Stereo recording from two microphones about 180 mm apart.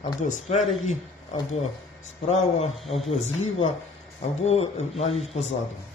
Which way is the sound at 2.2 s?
40° left (ahead or behind).